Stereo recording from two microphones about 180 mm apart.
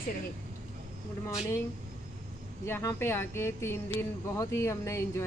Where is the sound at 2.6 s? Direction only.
15° left (ahead or behind).